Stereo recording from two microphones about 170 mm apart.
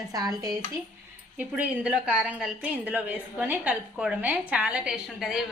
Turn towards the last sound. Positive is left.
turn(degrees=-5)  # may be behind; listen again after turning